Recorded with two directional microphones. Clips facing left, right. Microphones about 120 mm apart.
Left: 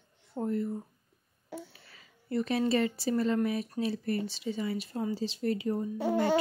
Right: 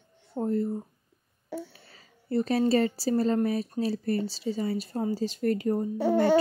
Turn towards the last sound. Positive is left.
turn(degrees=-40)  # may be behind; listen again after turning